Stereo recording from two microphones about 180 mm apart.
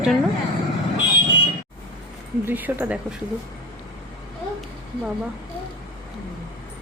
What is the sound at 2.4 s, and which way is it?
Speech, 10° right (ahead or behind).